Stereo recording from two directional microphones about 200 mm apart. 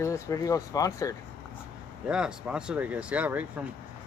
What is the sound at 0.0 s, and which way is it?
Speech, 15° left (ahead or behind).